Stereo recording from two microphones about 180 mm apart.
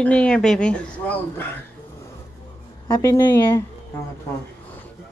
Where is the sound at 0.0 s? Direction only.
5° left (ahead or behind).